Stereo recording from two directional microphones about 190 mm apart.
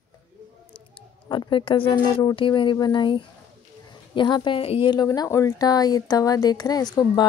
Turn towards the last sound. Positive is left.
turn(degrees=20)  # may be behind; listen again after turning